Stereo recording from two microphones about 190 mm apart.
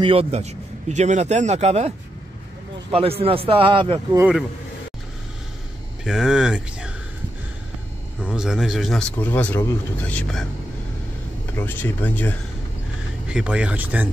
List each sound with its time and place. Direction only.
0.0 s a man's voice: 30° right (ahead or behind)
4.2 s speech: 5° right (ahead or behind)
6.0 s speech: 5° right (ahead or behind)
8.2 s speech: 5° right (ahead or behind)
9.2 s speech: 10° left (ahead or behind)
11.5 s speech: 10° left (ahead or behind)
13.3 s speech: 5° right (ahead or behind)